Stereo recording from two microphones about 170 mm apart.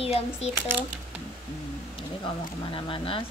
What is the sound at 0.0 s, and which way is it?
Speech, 35° left (ahead or behind).